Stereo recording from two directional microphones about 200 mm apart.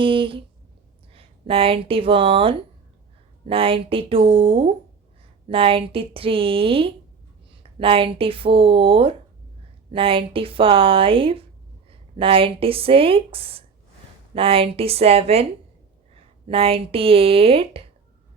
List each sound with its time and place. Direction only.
0.0 s speech: 25° right (ahead or behind)